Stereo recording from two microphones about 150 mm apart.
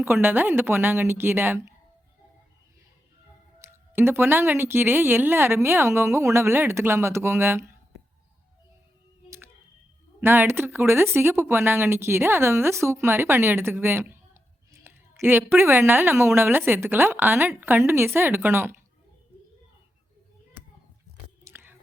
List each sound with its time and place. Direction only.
0.0 s a woman's voice: 15° right (ahead or behind)
3.6 s a woman's voice: 15° right (ahead or behind)
10.2 s a woman's voice: 15° right (ahead or behind)
21.4 s biting: 15° right (ahead or behind)